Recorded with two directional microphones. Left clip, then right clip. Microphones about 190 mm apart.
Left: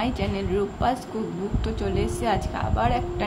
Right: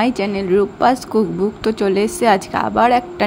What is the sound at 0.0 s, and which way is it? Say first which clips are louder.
A woman's voice: right 9 dB; 40° right (ahead or behind).